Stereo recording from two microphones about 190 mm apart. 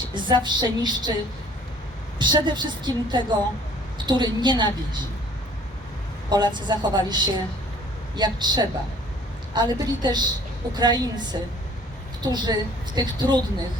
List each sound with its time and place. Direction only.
0.0 s a woman's voice: 25° right (ahead or behind)
2.1 s a woman's voice: 25° right (ahead or behind)
6.3 s a woman's voice: 25° right (ahead or behind)